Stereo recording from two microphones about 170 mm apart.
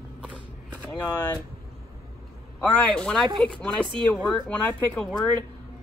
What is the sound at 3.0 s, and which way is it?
Speech, 5° left (ahead or behind).